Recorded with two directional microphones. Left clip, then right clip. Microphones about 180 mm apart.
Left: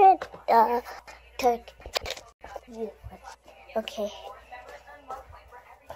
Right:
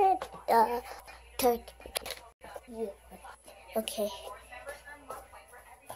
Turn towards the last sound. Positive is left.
turn(degrees=-5)  # may be behind; listen again after turning